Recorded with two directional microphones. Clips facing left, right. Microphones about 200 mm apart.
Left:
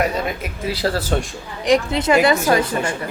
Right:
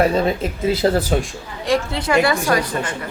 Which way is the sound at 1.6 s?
20° left (ahead or behind).